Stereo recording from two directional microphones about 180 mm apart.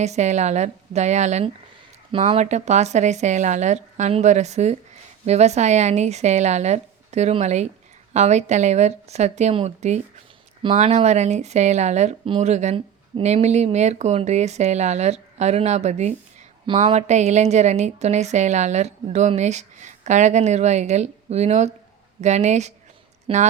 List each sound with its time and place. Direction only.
0.0 s a woman's voice: 40° right (ahead or behind)